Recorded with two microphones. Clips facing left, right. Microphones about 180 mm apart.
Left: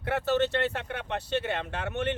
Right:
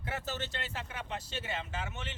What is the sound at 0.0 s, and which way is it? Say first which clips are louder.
Speech: left 12 dB; 65° left (ahead or behind).